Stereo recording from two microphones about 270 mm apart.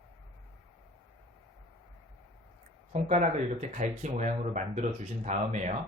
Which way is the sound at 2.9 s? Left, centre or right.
Right.